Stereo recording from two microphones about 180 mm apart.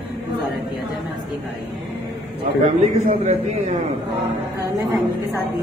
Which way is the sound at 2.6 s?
40° right (ahead or behind).